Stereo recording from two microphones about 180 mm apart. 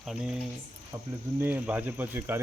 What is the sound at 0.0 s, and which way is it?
Cricket, centre (ahead or behind).